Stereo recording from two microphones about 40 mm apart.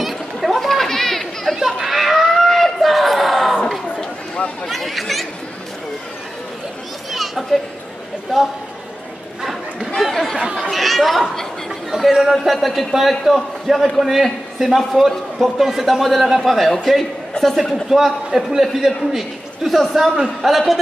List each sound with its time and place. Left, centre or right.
0.0 s chatter: centre
1.8 s crowd: centre
4.6 s chatter: centre
7.1 s children playing: centre
10.3 s chatter: centre
10.7 s chatter: centre
11.9 s a sound: centre
12.5 s a man's voice: centre
17.8 s a man's voice: centre